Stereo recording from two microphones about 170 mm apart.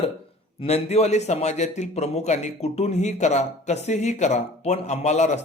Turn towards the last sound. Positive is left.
turn(degrees=45)  # may be behind; listen again after turning